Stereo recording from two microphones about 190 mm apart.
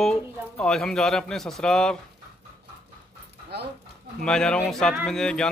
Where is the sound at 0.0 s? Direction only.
5° left (ahead or behind).